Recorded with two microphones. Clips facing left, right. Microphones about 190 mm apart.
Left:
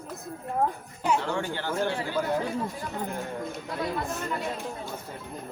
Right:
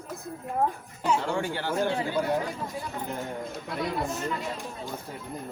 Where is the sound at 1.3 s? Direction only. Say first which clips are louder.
Right 1 dB; 10° right (ahead or behind).